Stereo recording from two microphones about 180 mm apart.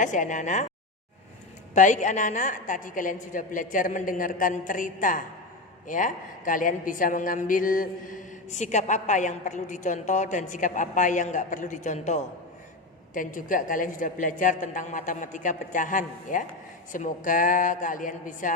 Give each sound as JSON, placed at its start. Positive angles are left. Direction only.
{"t": 0.0, "sound": "a woman's voice", "side_deg": 45}
{"t": 1.7, "sound": "a woman's voice", "side_deg": 45}